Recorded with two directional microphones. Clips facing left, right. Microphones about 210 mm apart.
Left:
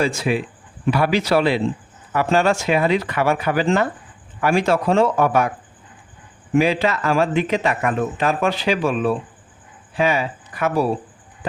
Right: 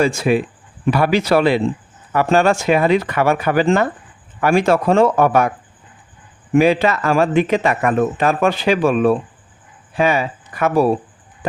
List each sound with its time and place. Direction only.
0.0 s speech: 50° right (ahead or behind)
6.6 s speech: 50° right (ahead or behind)